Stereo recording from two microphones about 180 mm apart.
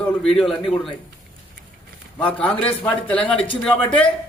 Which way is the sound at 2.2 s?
5° left (ahead or behind).